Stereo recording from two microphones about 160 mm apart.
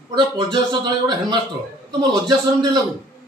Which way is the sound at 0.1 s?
30° right (ahead or behind).